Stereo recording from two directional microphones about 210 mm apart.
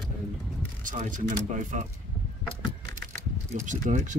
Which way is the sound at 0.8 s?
40° right (ahead or behind).